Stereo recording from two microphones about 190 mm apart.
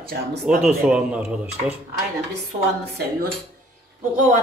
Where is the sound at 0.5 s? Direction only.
5° right (ahead or behind).